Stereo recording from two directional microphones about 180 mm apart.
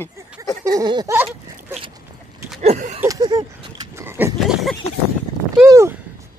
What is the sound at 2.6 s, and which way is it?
Speech, 40° right (ahead or behind).